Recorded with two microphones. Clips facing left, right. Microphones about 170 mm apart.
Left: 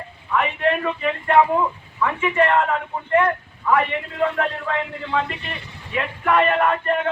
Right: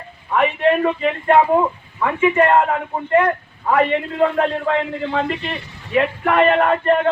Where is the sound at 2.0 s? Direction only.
30° right (ahead or behind).